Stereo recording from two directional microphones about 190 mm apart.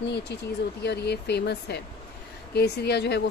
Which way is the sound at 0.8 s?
60° left (ahead or behind).